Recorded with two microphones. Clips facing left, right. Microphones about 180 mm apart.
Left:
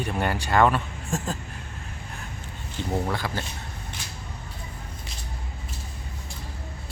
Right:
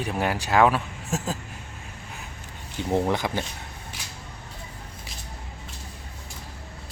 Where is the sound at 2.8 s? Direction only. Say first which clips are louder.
Right 4 dB; 20° right (ahead or behind).